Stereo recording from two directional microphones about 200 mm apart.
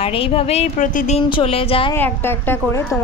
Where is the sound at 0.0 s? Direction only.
30° left (ahead or behind).